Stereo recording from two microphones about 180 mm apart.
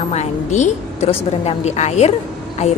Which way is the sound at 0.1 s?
40° left (ahead or behind).